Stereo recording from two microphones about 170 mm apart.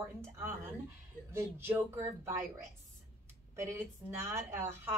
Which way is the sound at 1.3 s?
15° right (ahead or behind).